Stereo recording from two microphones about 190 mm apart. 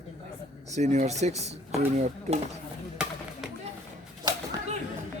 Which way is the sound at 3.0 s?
5° right (ahead or behind).